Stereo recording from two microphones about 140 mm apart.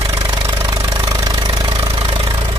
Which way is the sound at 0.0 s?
30° right (ahead or behind).